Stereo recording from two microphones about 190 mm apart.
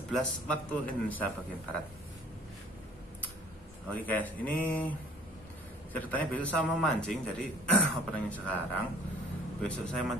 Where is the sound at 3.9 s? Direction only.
10° left (ahead or behind).